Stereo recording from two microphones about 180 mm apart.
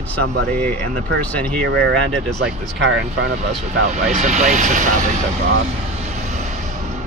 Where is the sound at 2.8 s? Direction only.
90° right.